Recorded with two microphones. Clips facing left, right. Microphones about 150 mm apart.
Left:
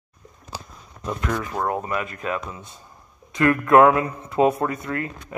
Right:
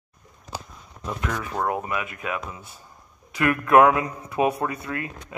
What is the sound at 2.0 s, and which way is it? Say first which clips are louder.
Speech: left 3 dB; 10° right (ahead or behind).